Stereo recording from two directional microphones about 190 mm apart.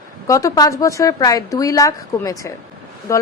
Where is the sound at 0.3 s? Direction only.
15° left (ahead or behind).